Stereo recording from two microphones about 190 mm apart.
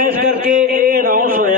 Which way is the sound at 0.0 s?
45° right (ahead or behind).